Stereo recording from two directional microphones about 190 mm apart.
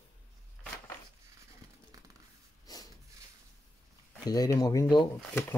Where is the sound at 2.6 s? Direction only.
20° left (ahead or behind).